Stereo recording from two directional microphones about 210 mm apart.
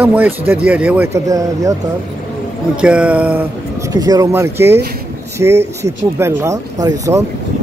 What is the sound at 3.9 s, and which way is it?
Speech, 15° right (ahead or behind).